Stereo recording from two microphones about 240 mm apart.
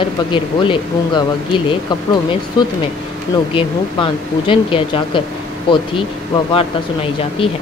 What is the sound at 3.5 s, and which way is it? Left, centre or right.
Speech, left.